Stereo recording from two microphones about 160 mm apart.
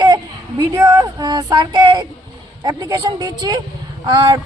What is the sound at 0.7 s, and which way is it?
Speech, 20° right (ahead or behind).